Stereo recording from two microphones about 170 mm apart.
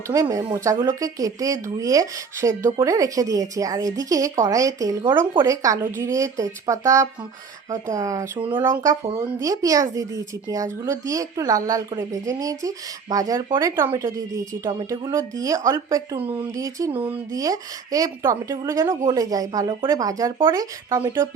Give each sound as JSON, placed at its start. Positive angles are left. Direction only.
{"t": 0.1, "sound": "speech", "side_deg": -20}